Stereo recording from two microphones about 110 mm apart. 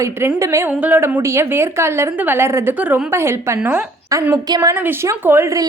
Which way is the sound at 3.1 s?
25° right (ahead or behind).